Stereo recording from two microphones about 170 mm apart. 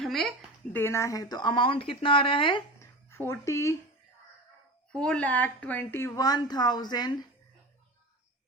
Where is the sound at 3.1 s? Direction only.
15° left (ahead or behind).